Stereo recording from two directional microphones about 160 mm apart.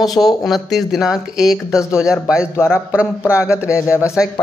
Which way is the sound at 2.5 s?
15° left (ahead or behind).